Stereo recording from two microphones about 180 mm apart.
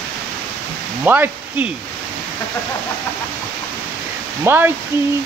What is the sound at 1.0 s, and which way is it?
Speech, 10° right (ahead or behind).